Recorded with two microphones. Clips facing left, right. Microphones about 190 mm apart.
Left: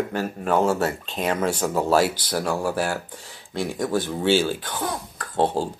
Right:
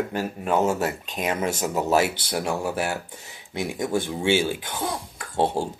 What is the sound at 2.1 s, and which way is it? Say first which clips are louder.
Speech: left 1 dB; 25° right (ahead or behind).